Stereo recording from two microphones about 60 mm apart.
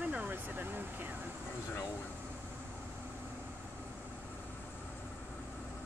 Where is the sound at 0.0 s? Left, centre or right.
Right.